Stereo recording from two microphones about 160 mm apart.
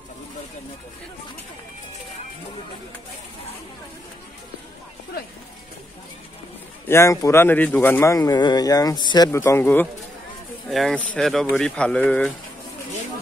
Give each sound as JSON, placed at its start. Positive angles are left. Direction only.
{"t": 6.9, "sound": "speech", "side_deg": 20}
{"t": 10.7, "sound": "speech", "side_deg": 0}